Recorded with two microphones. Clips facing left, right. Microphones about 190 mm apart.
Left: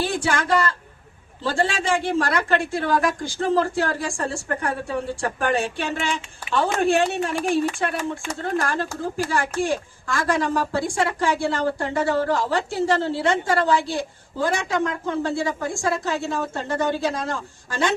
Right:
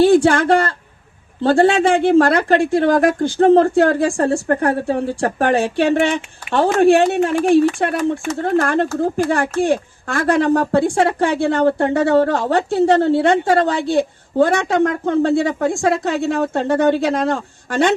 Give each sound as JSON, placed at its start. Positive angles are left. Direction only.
{"t": 0.0, "sound": "speech", "side_deg": -60}